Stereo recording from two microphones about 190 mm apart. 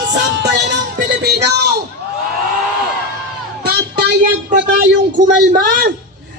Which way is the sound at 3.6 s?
55° right (ahead or behind).